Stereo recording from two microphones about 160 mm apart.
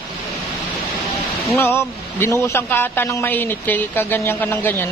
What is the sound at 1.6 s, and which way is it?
A man's voice, 15° left (ahead or behind).